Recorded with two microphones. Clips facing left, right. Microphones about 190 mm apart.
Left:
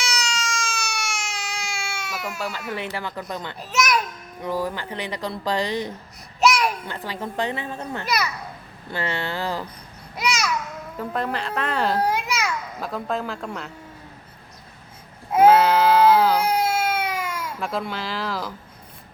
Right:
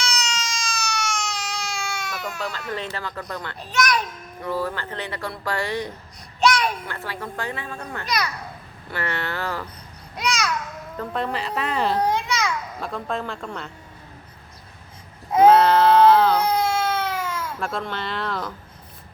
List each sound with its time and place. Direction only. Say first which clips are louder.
0.0 s a sound: even; 10° left (ahead or behind)
0.9 s baby cry: right 3 dB; 10° left (ahead or behind)
2.0 s speech: even; 10° left (ahead or behind)
6.8 s speech: left 1 dB; 20° left (ahead or behind)
8.0 s a child's voice: even; 5° left (ahead or behind)
8.9 s speech: left 1 dB; 20° left (ahead or behind)
10.2 s babbling: even; 10° left (ahead or behind)
10.9 s a child's voice: even; centre (ahead or behind)
15.3 s speech: right 1 dB; 10° left (ahead or behind)